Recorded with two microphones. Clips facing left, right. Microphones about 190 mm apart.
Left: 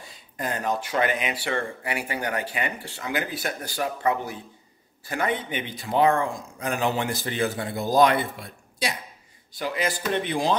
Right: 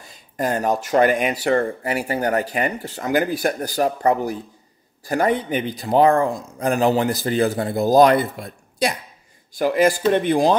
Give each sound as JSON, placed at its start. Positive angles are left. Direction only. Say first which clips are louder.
{"t": 0.0, "sound": "speech", "louder": "right 8 dB", "side_deg": -40}